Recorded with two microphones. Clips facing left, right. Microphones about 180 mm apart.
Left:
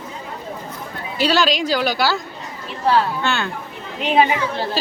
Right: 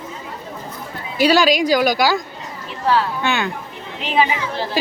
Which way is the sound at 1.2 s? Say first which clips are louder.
Right 4 dB; 10° right (ahead or behind).